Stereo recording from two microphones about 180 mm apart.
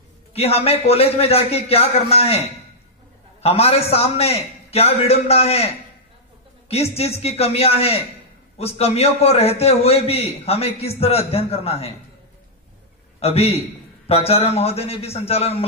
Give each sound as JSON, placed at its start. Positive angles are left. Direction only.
{"t": 0.3, "sound": "a man's voice", "side_deg": 35}
{"t": 3.4, "sound": "a man's voice", "side_deg": 35}
{"t": 13.2, "sound": "a man's voice", "side_deg": 35}